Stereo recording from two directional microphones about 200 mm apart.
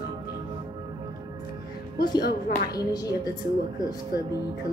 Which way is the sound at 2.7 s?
20° left (ahead or behind).